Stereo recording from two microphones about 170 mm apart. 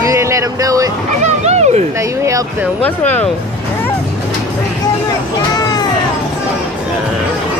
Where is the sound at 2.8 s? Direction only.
10° left (ahead or behind).